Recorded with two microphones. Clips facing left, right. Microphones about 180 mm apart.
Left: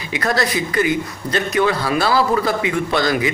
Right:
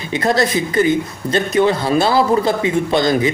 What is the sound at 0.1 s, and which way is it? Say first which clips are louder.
Speech: right 4 dB; 25° right (ahead or behind).